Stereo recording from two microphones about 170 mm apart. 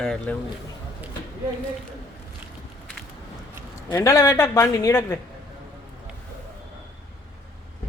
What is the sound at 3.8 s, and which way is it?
A man's voice, 20° left (ahead or behind).